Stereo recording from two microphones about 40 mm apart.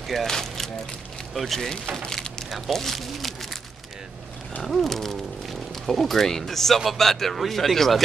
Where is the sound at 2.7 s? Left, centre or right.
Centre.